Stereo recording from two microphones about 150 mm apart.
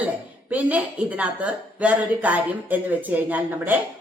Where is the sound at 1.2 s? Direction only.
10° right (ahead or behind).